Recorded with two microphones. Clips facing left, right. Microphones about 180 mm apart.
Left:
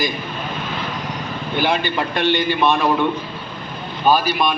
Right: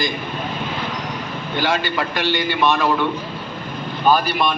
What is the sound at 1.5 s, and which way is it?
A man's voice, 15° left (ahead or behind).